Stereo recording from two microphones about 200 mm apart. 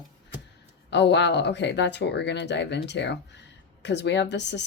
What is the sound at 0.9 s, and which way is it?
Speech, 60° left (ahead or behind).